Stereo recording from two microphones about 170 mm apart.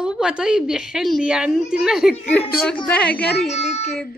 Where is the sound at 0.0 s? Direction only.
5° right (ahead or behind).